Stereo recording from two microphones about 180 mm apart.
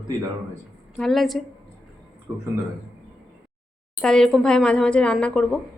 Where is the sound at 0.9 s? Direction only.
Centre (ahead or behind).